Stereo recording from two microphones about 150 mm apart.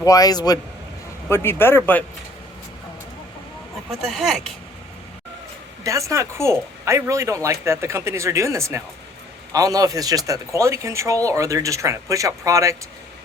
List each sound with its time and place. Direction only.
0.0 s a man's voice: 25° left (ahead or behind)
4.0 s speech: centre (ahead or behind)
5.8 s speech: 20° right (ahead or behind)